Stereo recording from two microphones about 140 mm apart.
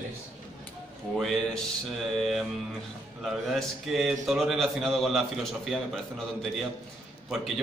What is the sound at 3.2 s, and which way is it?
A man's voice, centre (ahead or behind).